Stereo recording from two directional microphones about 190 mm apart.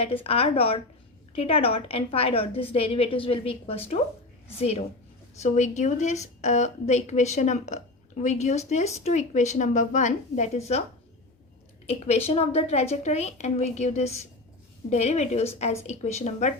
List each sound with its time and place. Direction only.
0.0 s a woman's voice: 30° left (ahead or behind)
11.9 s a woman's voice: 35° left (ahead or behind)